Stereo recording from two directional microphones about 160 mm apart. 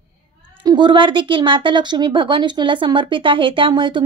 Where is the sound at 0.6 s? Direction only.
30° right (ahead or behind).